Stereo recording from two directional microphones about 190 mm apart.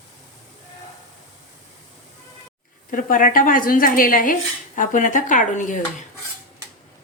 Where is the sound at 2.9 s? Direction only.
45° left (ahead or behind).